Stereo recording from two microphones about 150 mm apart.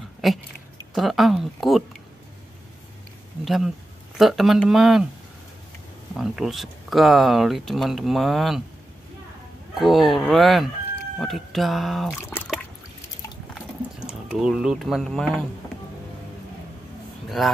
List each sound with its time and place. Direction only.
0.2 s speech: centre (ahead or behind)
3.4 s speech: centre (ahead or behind)
6.1 s speech: centre (ahead or behind)
9.8 s speech: centre (ahead or behind)
12.1 s speech: 20° left (ahead or behind)
13.6 s a sound: 5° right (ahead or behind)